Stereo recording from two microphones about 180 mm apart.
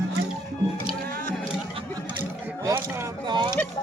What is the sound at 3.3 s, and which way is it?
Speech, 25° right (ahead or behind).